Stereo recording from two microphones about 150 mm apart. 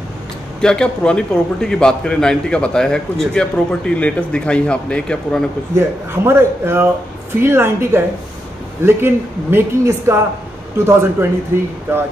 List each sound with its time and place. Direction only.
0.6 s a man's voice: 5° left (ahead or behind)
5.8 s a man's voice: 15° right (ahead or behind)